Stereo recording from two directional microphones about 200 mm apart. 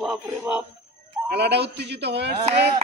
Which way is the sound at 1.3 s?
55° right (ahead or behind).